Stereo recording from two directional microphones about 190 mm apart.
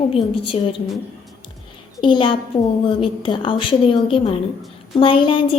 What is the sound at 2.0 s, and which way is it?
A woman's voice, 25° left (ahead or behind).